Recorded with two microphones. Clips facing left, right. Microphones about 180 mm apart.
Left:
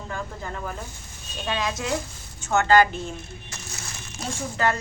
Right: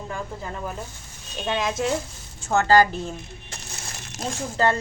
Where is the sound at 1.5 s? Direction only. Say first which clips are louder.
Right 3 dB; 25° right (ahead or behind).